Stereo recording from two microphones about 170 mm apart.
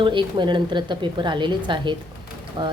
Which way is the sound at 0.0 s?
30° right (ahead or behind).